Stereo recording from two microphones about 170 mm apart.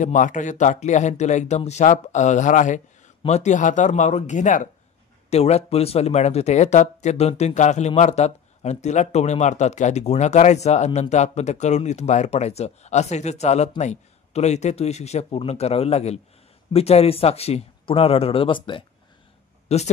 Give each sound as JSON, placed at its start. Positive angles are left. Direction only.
{"t": 0.0, "sound": "speech", "side_deg": 50}